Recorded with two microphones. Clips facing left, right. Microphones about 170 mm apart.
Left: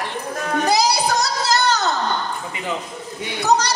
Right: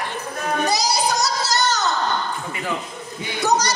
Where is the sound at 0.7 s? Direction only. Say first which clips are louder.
Left 3 dB; 60° left (ahead or behind).